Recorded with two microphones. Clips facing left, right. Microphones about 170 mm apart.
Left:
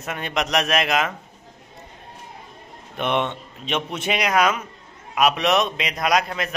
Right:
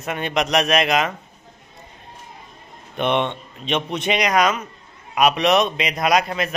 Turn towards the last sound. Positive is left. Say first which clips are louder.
# right 2 dB
turn(degrees=0)  # may be behind; listen again after turning